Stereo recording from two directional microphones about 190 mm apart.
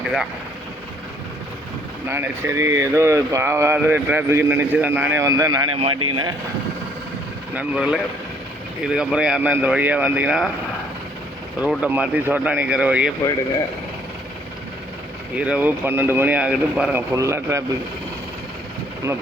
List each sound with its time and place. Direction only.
2.0 s a man's voice: 10° right (ahead or behind)
7.5 s speech: 5° right (ahead or behind)
11.6 s speech: 5° right (ahead or behind)
15.4 s speech: 5° right (ahead or behind)